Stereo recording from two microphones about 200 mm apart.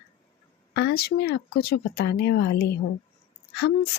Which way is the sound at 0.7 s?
55° left (ahead or behind).